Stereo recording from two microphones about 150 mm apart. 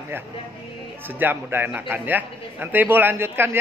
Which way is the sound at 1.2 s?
15° right (ahead or behind).